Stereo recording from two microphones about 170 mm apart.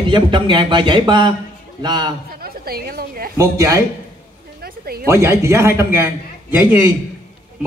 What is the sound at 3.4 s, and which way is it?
Speech, 20° right (ahead or behind).